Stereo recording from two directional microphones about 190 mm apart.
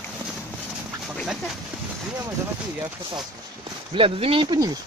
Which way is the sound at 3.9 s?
30° right (ahead or behind).